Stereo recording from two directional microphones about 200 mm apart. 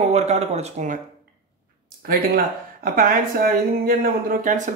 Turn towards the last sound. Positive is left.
turn(degrees=-40)  # may be behind; listen again after turning